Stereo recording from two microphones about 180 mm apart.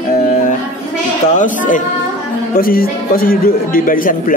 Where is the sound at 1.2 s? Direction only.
45° left (ahead or behind).